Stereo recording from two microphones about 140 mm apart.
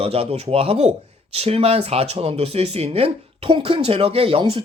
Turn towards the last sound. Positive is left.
turn(degrees=-40)  # may be behind; listen again after turning